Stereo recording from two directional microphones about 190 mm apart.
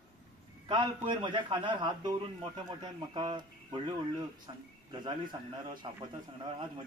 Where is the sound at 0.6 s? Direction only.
25° right (ahead or behind).